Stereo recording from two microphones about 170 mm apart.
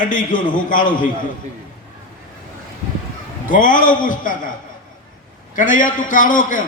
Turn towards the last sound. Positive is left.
turn(degrees=50)  # may be behind; listen again after turning